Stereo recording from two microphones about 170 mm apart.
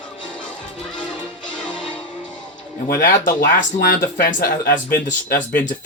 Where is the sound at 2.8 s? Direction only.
55° left (ahead or behind).